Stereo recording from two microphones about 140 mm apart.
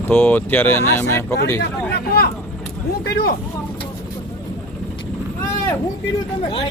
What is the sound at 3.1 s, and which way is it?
Speech, 90° left.